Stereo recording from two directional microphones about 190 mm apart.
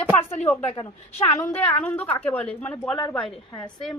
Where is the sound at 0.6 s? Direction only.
30° left (ahead or behind).